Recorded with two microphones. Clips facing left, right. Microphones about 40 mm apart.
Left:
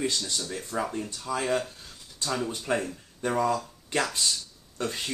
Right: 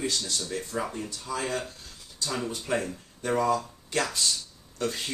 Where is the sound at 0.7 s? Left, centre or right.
Left.